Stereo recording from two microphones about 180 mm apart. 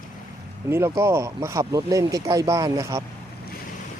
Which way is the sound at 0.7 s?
15° right (ahead or behind).